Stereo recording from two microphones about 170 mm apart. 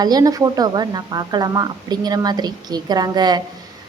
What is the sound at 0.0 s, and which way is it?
Speech, 20° right (ahead or behind).